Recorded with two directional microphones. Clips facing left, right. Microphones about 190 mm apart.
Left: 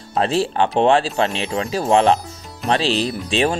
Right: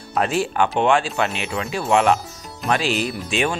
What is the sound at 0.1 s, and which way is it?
Speech, 30° left (ahead or behind).